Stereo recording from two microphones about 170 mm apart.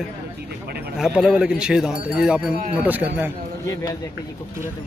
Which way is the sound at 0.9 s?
5° right (ahead or behind).